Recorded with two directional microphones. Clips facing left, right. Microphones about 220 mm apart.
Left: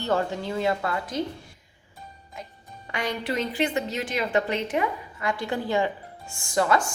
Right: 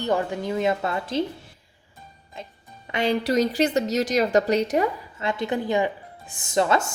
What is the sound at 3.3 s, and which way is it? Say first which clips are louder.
A woman's voice: right 3 dB; 40° right (ahead or behind).